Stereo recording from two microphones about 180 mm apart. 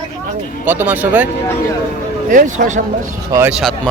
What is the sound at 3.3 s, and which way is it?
Speech, 10° right (ahead or behind).